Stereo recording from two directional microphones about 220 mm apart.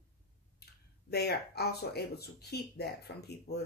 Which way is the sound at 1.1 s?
45° left (ahead or behind).